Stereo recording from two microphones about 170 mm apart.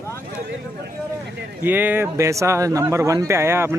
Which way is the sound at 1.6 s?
10° right (ahead or behind).